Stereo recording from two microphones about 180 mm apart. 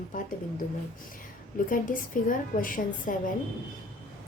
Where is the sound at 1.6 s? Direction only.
50° left (ahead or behind).